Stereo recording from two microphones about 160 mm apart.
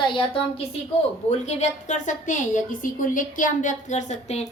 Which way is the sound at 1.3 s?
45° left (ahead or behind).